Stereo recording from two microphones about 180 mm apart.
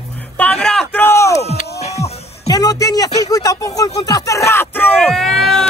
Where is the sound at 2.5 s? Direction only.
20° left (ahead or behind); by 5.6 s centre (ahead or behind).